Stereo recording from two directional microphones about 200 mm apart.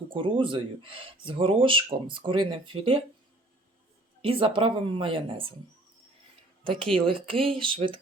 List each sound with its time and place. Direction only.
0.1 s speech: 25° right (ahead or behind)
4.2 s speech: 25° right (ahead or behind)
6.7 s speech: 5° left (ahead or behind)
7.0 s speech: 25° right (ahead or behind)